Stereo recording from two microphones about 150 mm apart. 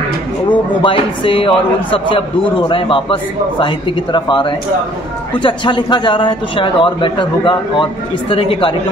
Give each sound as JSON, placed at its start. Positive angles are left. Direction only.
{"t": 0.5, "sound": "a man's voice", "side_deg": 35}